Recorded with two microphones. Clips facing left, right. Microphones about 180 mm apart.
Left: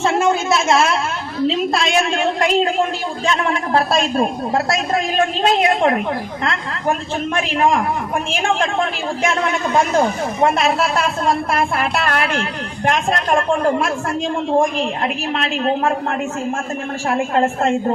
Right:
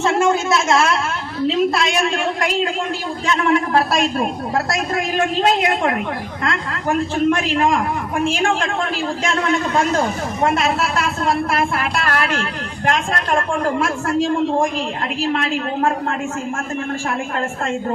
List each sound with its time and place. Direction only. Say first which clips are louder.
4.5 s a woman's voice: left 2 dB; 20° left (ahead or behind)
10.4 s a woman's voice: left 2 dB; 25° left (ahead or behind)
15.2 s a woman's voice: even; 25° left (ahead or behind)
17.1 s a woman's voice: left 6 dB; 30° left (ahead or behind)